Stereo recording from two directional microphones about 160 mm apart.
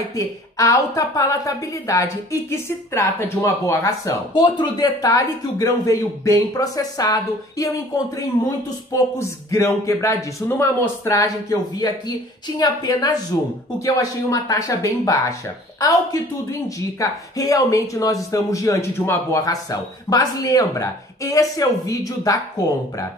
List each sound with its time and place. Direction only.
0.1 s a woman's voice: 20° left (ahead or behind)
9.5 s a woman's voice: 20° left (ahead or behind)